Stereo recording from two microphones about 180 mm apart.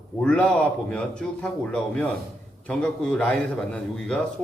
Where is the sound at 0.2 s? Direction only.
5° left (ahead or behind).